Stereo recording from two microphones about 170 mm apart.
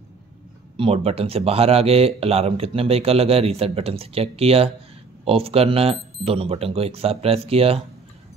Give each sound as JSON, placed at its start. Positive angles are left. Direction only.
{"t": 0.7, "sound": "speech", "side_deg": -35}